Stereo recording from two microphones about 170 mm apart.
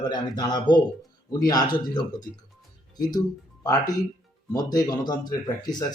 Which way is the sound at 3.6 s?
20° left (ahead or behind).